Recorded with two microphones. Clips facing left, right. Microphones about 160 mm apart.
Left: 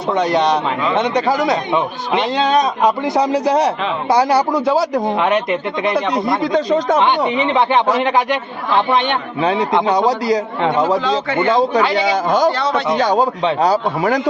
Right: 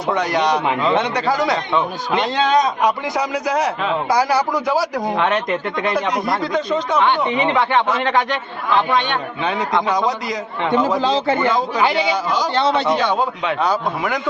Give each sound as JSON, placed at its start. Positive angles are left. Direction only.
{"t": 0.1, "sound": "speech", "side_deg": 25}
{"t": 2.8, "sound": "a man's voice", "side_deg": 30}
{"t": 5.1, "sound": "speech", "side_deg": 15}
{"t": 5.9, "sound": "speech", "side_deg": 30}
{"t": 6.5, "sound": "a man's voice", "side_deg": 40}
{"t": 7.3, "sound": "a man's voice", "side_deg": 20}
{"t": 11.0, "sound": "a man's voice", "side_deg": -30}
{"t": 11.3, "sound": "speech", "side_deg": 30}
{"t": 12.0, "sound": "speech", "side_deg": 50}
{"t": 12.5, "sound": "a man's voice", "side_deg": -25}
{"t": 13.0, "sound": "a man's voice", "side_deg": 40}